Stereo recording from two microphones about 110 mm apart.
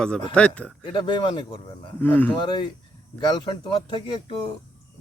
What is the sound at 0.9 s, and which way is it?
Speech, 45° left (ahead or behind).